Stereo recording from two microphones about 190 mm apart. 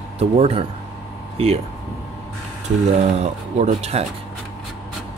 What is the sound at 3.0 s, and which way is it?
Speech, 35° right (ahead or behind).